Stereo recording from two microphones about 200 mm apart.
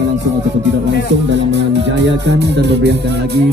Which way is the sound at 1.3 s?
60° right (ahead or behind).